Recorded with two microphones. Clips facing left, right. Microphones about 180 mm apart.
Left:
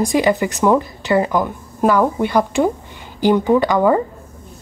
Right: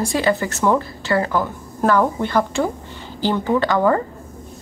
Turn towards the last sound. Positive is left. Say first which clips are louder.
# left 3 dB
turn(degrees=15)  # may be behind; listen again after turning